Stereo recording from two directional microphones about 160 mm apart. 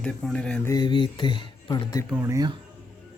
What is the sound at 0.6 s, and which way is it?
Speech, 25° left (ahead or behind).